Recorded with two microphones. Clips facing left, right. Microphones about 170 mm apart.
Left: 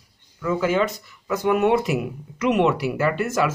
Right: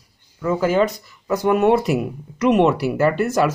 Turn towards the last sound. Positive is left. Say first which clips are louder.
# right 4 dB
turn(degrees=-40)  # may be behind; listen again after turning